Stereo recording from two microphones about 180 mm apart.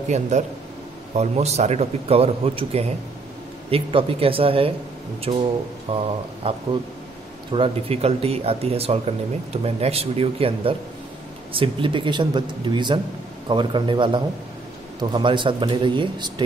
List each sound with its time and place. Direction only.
0.3 s a man's voice: 40° right (ahead or behind)